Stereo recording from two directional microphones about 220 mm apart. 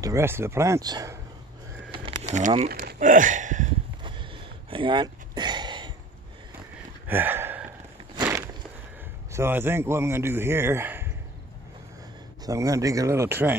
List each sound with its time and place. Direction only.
0.0 s speech: 10° right (ahead or behind)
2.2 s speech: 30° right (ahead or behind)
4.0 s a sound: 20° right (ahead or behind)
7.1 s a sound: 10° right (ahead or behind)
9.3 s speech: 10° right (ahead or behind)
12.4 s speech: 15° right (ahead or behind)